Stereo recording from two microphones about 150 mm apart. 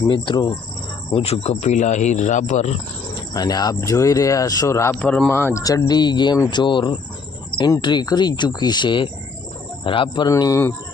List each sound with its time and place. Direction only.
0.1 s speech: 35° left (ahead or behind); by 2.7 s 50° left (ahead or behind)
3.3 s speech: 25° left (ahead or behind)
4.9 s speech: 5° left (ahead or behind); by 10.2 s 35° left (ahead or behind)
10.2 s speech: 25° left (ahead or behind)